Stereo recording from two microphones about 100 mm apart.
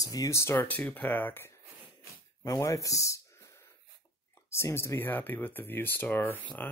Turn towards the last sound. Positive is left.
turn(degrees=20)  # may be behind; listen again after turning